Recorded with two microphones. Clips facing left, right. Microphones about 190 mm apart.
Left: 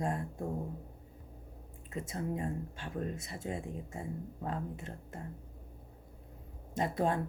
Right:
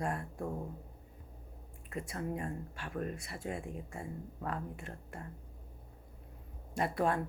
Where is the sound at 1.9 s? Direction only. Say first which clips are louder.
Left 1 dB; 20° left (ahead or behind).